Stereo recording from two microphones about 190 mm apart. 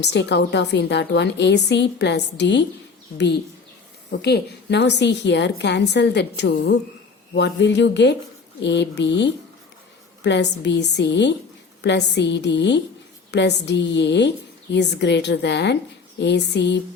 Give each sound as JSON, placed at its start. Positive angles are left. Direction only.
{"t": 0.0, "sound": "a woman's voice", "side_deg": 65}